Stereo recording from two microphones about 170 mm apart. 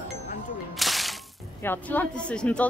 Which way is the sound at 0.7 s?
Centre (ahead or behind).